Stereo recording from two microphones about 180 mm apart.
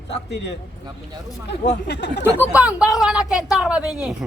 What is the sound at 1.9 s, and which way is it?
Speech, 75° left (ahead or behind).